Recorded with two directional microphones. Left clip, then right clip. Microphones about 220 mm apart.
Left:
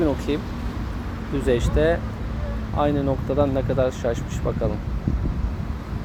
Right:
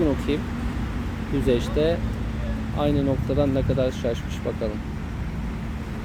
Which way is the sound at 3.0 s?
20° left (ahead or behind).